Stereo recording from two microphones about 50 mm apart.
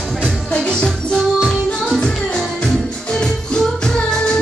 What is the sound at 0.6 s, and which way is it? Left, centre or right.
Music, centre.